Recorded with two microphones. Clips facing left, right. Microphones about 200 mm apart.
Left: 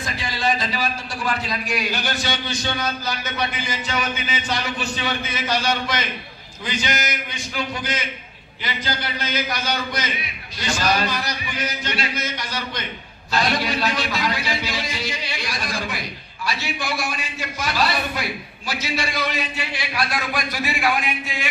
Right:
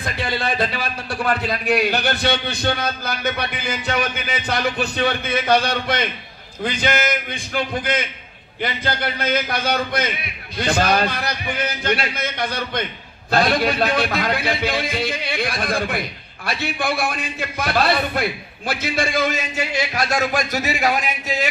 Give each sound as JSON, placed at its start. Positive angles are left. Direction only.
{"t": 0.0, "sound": "a man's voice", "side_deg": -60}